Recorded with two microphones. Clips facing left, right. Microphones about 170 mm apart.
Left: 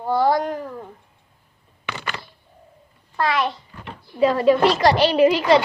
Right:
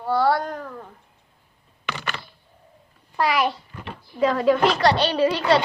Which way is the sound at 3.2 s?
5° right (ahead or behind).